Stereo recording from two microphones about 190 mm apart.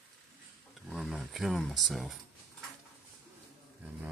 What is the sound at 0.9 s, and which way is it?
Speech, centre (ahead or behind).